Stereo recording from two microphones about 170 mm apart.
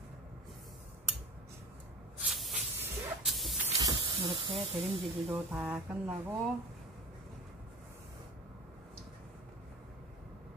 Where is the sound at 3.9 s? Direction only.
30° right (ahead or behind).